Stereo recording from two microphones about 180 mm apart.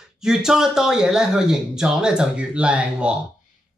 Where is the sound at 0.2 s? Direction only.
5° right (ahead or behind).